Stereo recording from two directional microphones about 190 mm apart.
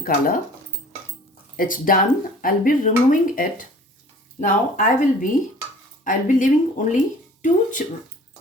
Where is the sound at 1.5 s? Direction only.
50° left (ahead or behind).